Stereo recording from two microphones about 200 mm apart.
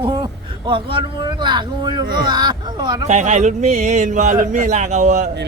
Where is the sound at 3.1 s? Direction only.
35° right (ahead or behind).